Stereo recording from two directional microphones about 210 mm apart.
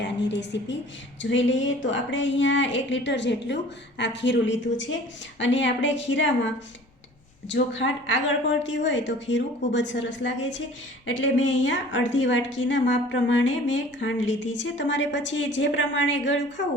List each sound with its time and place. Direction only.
0.0 s a woman's voice: 55° left (ahead or behind)
7.5 s a woman's voice: 60° left (ahead or behind)